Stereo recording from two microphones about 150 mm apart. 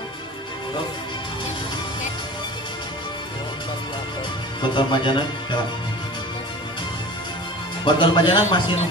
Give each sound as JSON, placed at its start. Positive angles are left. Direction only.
{"t": 4.6, "sound": "speech", "side_deg": 30}
{"t": 7.8, "sound": "speech", "side_deg": 30}